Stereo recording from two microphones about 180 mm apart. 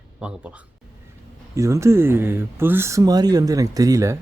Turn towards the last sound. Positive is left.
turn(degrees=-20)  # may be behind; listen again after turning